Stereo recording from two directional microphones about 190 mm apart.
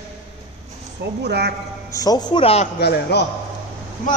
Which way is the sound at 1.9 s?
20° left (ahead or behind).